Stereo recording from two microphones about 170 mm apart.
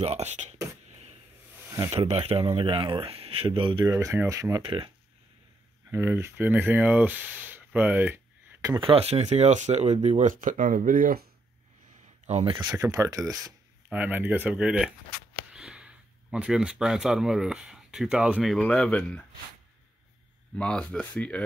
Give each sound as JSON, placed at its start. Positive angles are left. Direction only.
{"t": 0.0, "sound": "speech", "side_deg": -40}
{"t": 1.7, "sound": "speech", "side_deg": -15}
{"t": 2.0, "sound": "speech", "side_deg": -35}
{"t": 3.9, "sound": "speech", "side_deg": -15}
{"t": 5.9, "sound": "speech", "side_deg": -15}
{"t": 12.3, "sound": "speech", "side_deg": -40}
{"t": 12.6, "sound": "speech", "side_deg": -15}
{"t": 20.5, "sound": "speech", "side_deg": 5}